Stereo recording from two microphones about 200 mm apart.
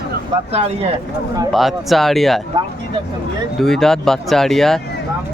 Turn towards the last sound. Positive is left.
turn(degrees=0)  # may be behind; listen again after turning